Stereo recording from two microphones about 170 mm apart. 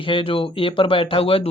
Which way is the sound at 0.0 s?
30° left (ahead or behind).